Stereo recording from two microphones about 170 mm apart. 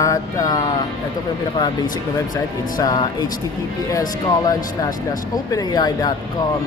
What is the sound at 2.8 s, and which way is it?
Speech, 25° left (ahead or behind).